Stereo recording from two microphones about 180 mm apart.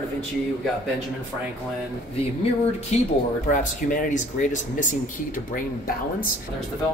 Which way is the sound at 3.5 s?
45° left (ahead or behind).